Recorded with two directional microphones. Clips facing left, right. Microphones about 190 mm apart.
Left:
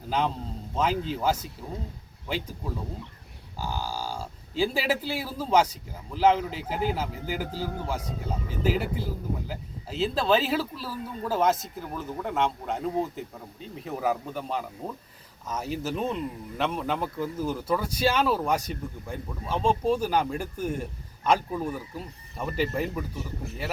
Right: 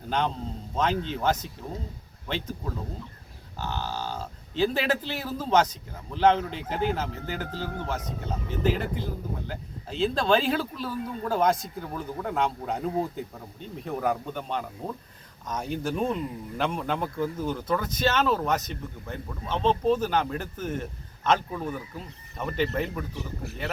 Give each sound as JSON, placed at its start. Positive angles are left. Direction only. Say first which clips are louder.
{"t": 0.1, "sound": "speech", "louder": "even", "side_deg": 5}
{"t": 3.6, "sound": "speech", "louder": "even", "side_deg": 10}